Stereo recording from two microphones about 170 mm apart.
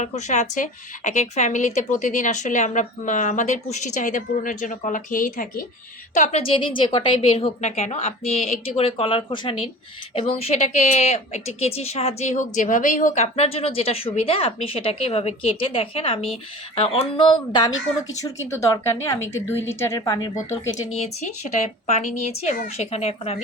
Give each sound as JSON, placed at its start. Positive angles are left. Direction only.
{"t": 0.0, "sound": "speech", "side_deg": 45}
{"t": 6.1, "sound": "a woman's voice", "side_deg": 40}
{"t": 21.0, "sound": "a woman's voice", "side_deg": 40}